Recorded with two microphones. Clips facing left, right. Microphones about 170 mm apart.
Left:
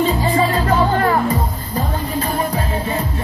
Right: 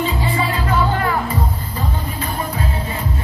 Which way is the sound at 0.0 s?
40° left (ahead or behind).